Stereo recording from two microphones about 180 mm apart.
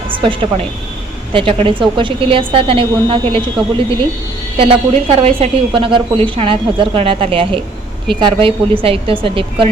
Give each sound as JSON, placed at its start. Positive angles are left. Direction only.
{"t": 0.1, "sound": "a woman's voice", "side_deg": -30}
{"t": 4.5, "sound": "a woman's voice", "side_deg": -30}